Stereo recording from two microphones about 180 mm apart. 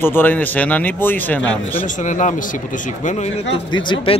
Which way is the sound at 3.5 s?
25° left (ahead or behind).